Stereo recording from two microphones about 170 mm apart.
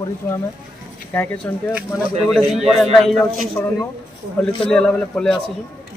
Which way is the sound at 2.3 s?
Centre (ahead or behind).